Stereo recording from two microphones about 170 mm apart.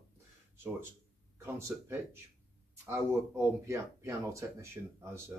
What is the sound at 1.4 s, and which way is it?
Speech, 15° right (ahead or behind).